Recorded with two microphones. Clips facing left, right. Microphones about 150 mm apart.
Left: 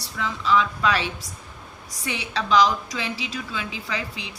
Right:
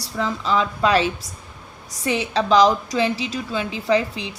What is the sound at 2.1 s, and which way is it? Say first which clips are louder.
A woman's voice: right 6 dB; 35° right (ahead or behind).